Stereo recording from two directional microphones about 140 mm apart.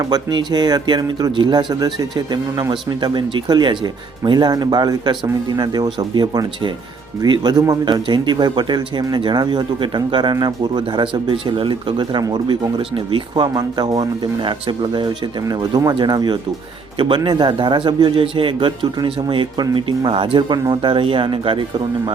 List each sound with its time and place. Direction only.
0.0 s speech: 30° right (ahead or behind)